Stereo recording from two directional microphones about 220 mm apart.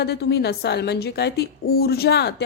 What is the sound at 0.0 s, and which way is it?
Speech, 45° left (ahead or behind).